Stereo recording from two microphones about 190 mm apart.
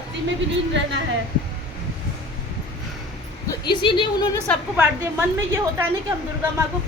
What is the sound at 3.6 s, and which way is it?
Speech, 25° left (ahead or behind).